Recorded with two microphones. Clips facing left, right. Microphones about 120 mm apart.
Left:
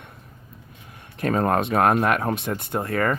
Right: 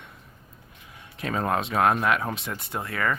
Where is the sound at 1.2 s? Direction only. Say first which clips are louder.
Left 5 dB; 50° left (ahead or behind).